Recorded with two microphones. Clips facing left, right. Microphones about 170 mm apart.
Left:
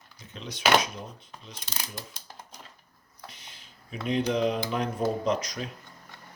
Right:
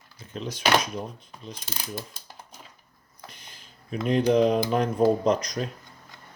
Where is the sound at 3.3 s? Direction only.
Centre (ahead or behind).